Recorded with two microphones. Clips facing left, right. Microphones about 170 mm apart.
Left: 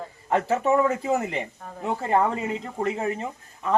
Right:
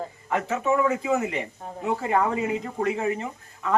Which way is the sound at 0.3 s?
35° left (ahead or behind).